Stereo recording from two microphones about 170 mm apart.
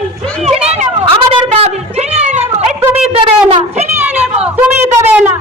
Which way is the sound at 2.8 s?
15° right (ahead or behind).